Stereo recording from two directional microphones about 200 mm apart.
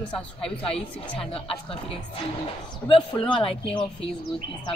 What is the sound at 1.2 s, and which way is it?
Speech, 25° left (ahead or behind).